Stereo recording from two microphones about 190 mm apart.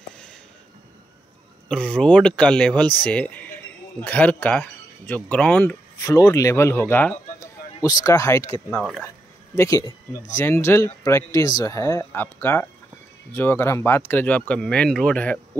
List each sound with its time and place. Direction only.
1.7 s speech: 5° left (ahead or behind)
9.6 s speech: 15° left (ahead or behind)